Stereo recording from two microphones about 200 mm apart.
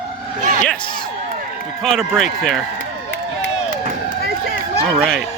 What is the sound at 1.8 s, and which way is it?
Speech, centre (ahead or behind).